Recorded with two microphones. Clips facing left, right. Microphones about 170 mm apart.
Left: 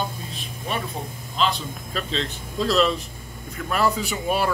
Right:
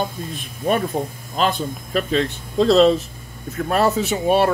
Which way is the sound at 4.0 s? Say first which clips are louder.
Right 7 dB; 25° right (ahead or behind).